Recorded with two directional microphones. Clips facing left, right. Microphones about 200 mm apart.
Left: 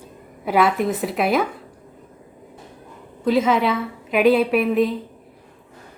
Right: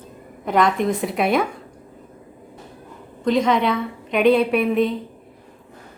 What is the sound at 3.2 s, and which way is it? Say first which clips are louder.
A woman's voice: even; 5° left (ahead or behind).